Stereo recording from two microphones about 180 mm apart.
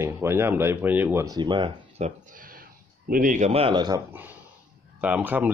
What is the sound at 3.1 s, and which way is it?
Speech, 45° right (ahead or behind).